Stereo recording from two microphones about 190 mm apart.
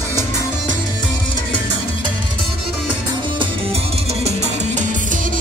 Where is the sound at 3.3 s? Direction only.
30° right (ahead or behind).